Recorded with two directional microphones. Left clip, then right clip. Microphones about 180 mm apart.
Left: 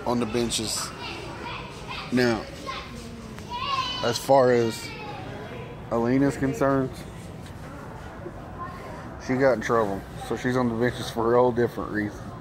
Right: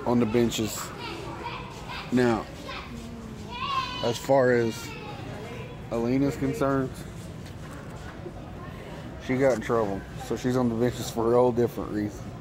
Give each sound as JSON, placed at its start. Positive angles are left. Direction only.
{"t": 0.0, "sound": "speech", "side_deg": -40}
{"t": 2.1, "sound": "speech", "side_deg": -10}
{"t": 4.0, "sound": "speech", "side_deg": -10}
{"t": 5.9, "sound": "a man's voice", "side_deg": 10}
{"t": 9.3, "sound": "speech", "side_deg": 0}